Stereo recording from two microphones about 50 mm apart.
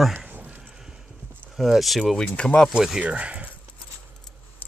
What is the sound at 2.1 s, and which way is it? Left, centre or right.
Speech, centre.